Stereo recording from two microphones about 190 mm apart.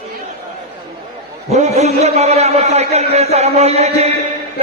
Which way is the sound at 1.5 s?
35° right (ahead or behind).